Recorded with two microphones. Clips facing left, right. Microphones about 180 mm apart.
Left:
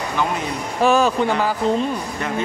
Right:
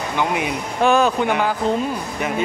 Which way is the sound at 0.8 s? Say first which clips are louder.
Even; centre (ahead or behind).